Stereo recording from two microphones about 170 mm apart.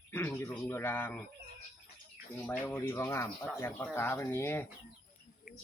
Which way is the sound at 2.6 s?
15° left (ahead or behind).